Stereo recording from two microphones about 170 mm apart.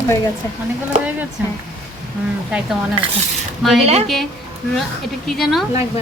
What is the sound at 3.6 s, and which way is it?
Speech, centre (ahead or behind).